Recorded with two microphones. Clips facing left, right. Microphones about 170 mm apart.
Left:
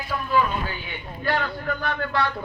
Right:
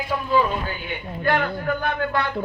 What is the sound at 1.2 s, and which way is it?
A man's voice, 55° right (ahead or behind).